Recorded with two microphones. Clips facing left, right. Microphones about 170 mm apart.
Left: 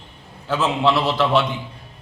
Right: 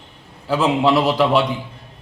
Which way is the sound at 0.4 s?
10° right (ahead or behind).